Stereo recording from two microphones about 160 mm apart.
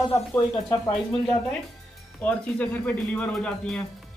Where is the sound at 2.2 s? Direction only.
10° left (ahead or behind).